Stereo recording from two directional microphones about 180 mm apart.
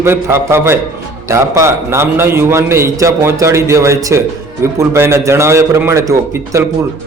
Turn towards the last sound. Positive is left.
turn(degrees=-15)  # may be behind; listen again after turning